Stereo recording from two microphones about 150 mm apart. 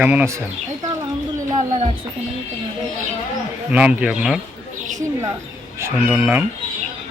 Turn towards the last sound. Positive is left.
turn(degrees=-10)  # may be behind; listen again after turning